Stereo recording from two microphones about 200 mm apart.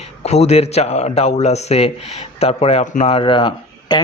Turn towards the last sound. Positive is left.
turn(degrees=25)  # may be behind; listen again after turning